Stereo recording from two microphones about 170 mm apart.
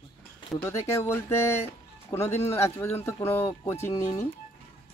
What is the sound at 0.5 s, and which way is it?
Speech, 15° left (ahead or behind).